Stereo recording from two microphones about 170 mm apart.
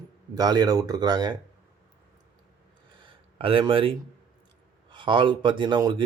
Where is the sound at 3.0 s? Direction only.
30° right (ahead or behind).